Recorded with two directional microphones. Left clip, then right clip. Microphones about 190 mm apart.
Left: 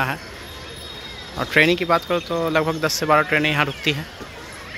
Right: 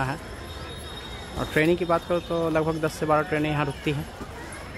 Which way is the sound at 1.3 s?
5° left (ahead or behind).